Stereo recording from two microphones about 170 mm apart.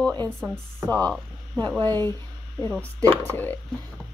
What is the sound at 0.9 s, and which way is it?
Speech, 10° left (ahead or behind).